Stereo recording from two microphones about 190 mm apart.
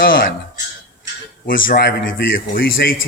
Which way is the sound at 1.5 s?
50° left (ahead or behind).